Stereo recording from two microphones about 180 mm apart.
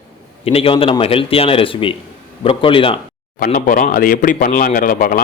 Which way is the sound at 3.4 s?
45° left (ahead or behind).